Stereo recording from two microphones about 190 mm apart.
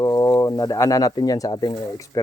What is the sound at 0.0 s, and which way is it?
Speech, 15° left (ahead or behind).